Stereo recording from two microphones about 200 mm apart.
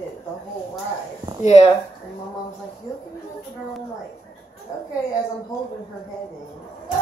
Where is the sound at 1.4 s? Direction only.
35° left (ahead or behind).